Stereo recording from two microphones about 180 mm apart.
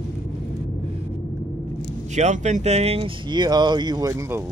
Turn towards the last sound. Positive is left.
turn(degrees=-15)  # may be behind; listen again after turning